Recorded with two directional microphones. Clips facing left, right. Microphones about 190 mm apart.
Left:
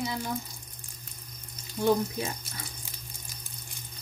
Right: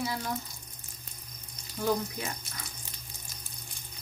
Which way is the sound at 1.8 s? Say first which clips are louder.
Left 5 dB; 25° left (ahead or behind).